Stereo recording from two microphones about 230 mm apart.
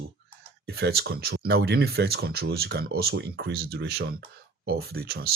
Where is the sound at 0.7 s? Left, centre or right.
Right.